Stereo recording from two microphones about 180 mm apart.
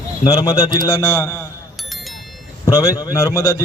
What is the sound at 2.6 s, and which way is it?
Speech, 20° left (ahead or behind).